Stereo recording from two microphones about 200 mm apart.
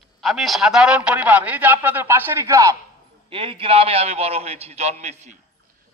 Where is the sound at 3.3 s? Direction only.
25° right (ahead or behind).